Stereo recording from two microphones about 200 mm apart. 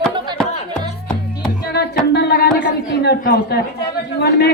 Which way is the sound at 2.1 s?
55° left (ahead or behind).